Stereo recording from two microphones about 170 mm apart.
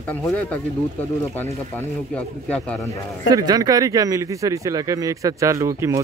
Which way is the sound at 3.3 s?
20° right (ahead or behind).